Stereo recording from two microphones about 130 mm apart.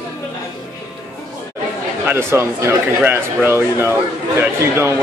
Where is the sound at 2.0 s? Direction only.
20° right (ahead or behind).